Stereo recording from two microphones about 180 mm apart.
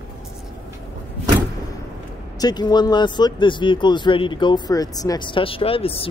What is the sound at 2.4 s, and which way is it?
Speech, 25° left (ahead or behind).